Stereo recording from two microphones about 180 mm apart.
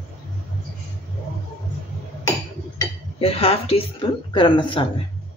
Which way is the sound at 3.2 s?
30° left (ahead or behind).